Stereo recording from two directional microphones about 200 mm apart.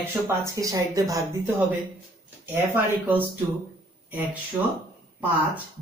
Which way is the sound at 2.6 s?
10° right (ahead or behind).